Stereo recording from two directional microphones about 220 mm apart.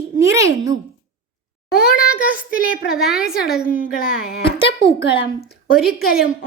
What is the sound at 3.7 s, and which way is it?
Speech, 40° left (ahead or behind).